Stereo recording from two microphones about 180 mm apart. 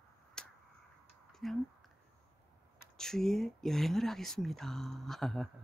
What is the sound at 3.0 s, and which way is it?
Speech, centre (ahead or behind).